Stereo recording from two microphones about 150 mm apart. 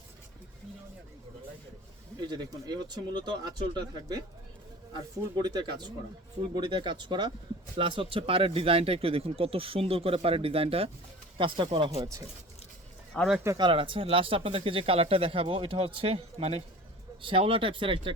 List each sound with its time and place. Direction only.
2.2 s speech: 30° right (ahead or behind)
5.4 s speech: 30° right (ahead or behind)
13.1 s speech: centre (ahead or behind)
13.6 s speech: 35° right (ahead or behind)